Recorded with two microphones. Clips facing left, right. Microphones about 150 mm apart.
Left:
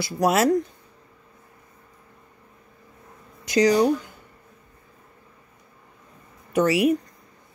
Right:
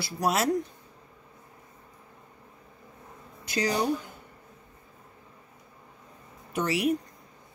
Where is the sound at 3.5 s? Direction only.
90° left.